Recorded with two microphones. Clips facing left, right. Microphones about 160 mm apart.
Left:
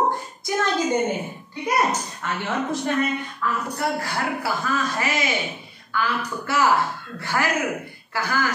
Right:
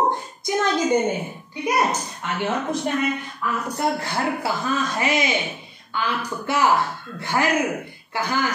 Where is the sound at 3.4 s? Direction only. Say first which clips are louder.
Right 2 dB; 15° right (ahead or behind).